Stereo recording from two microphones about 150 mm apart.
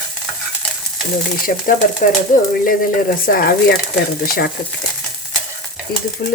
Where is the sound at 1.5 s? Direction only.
65° left (ahead or behind).